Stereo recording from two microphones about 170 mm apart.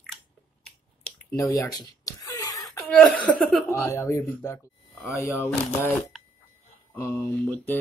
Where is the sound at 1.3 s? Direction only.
20° left (ahead or behind).